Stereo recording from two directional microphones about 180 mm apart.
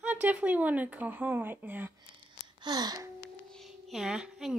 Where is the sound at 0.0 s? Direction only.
10° right (ahead or behind).